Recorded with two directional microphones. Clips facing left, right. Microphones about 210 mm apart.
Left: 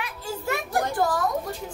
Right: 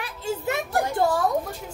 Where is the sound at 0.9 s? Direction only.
30° right (ahead or behind).